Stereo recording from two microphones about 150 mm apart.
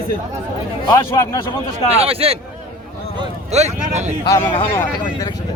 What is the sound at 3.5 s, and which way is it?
Speech, 50° right (ahead or behind).